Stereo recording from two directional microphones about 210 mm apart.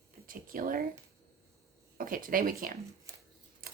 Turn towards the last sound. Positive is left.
turn(degrees=-45)  # may be behind; listen again after turning